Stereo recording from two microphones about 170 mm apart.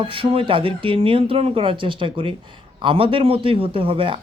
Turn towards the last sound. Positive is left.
turn(degrees=-30)  # may be behind; listen again after turning